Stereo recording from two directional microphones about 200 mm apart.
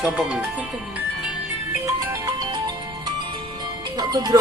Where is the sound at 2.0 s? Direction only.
10° right (ahead or behind).